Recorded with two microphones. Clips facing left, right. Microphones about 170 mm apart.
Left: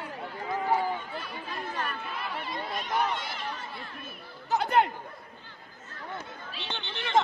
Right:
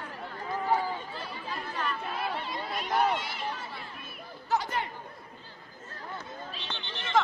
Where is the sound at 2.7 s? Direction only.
5° right (ahead or behind).